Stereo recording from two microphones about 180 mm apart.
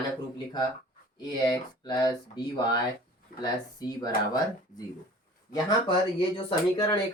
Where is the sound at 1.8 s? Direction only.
20° left (ahead or behind).